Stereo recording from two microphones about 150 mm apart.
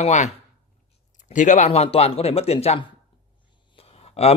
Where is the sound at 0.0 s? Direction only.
50° left (ahead or behind).